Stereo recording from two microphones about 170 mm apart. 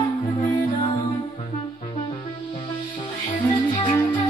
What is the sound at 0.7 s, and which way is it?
Music, 30° left (ahead or behind).